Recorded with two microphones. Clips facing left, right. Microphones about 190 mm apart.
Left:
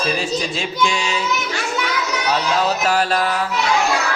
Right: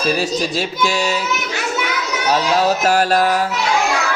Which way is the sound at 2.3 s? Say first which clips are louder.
Right 4 dB; 40° right (ahead or behind).